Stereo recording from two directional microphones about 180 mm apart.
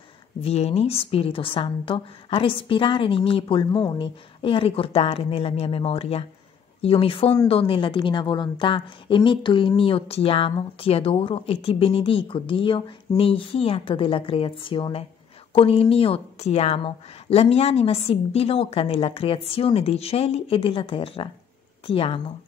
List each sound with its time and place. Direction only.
0.4 s a woman's voice: 35° left (ahead or behind)